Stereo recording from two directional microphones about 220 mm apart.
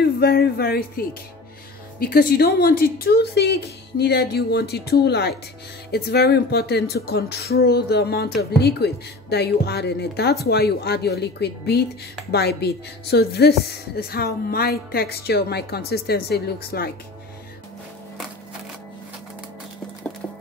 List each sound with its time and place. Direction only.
0.2 s a woman's voice: 45° left (ahead or behind)